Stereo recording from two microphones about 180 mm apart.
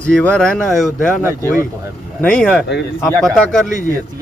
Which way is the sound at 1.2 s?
15° right (ahead or behind).